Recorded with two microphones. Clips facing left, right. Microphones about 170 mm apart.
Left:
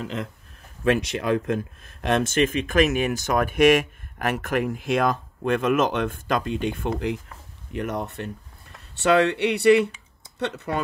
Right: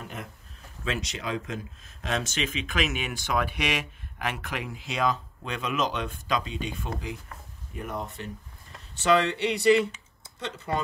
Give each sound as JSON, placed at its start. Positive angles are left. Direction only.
{"t": 0.0, "sound": "a man's voice", "side_deg": 90}
{"t": 0.8, "sound": "speech", "side_deg": 55}
{"t": 7.7, "sound": "speech", "side_deg": 75}